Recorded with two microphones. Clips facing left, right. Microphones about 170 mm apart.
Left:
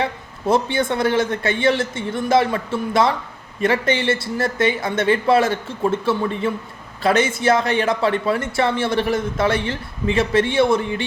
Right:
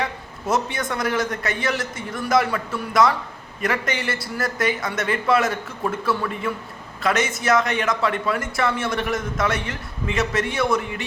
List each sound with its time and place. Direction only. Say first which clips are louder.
0.0 s a man's voice: left 4 dB; 30° left (ahead or behind)